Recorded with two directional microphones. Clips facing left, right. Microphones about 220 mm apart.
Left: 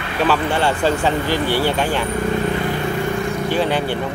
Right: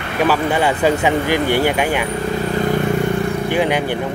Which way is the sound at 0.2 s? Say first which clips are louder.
Right 2 dB; 10° right (ahead or behind).